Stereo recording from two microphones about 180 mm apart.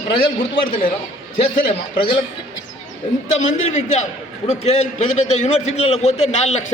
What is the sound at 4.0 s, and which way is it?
A man's voice, 40° left (ahead or behind).